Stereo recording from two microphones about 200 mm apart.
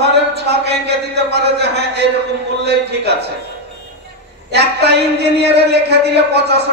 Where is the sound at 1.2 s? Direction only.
55° right (ahead or behind).